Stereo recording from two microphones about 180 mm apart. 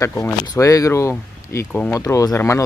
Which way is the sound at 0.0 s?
15° left (ahead or behind).